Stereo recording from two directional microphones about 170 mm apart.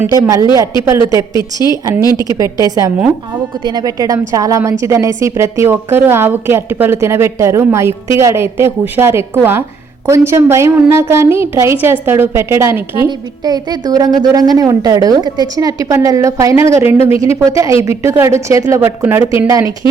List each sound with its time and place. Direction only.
0.0 s a woman's voice: 20° right (ahead or behind)
1.3 s a woman's voice: 25° left (ahead or behind)
1.7 s a woman's voice: 15° right (ahead or behind)
2.0 s a woman's voice: 25° left (ahead or behind)
2.3 s a woman's voice: 20° right (ahead or behind)
13.1 s a woman's voice: 25° right (ahead or behind)
16.8 s speech: 35° left (ahead or behind)
17.2 s a woman's voice: 20° right (ahead or behind)